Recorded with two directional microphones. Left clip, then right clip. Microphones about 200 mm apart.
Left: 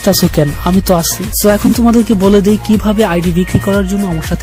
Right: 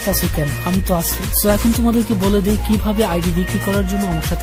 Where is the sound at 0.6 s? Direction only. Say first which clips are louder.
Left 6 dB; 45° left (ahead or behind).